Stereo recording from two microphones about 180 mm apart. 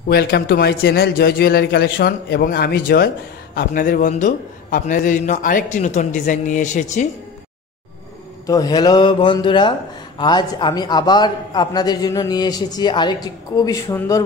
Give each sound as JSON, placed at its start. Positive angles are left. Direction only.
{"t": 0.1, "sound": "a man's voice", "side_deg": 60}
{"t": 8.5, "sound": "speech", "side_deg": 20}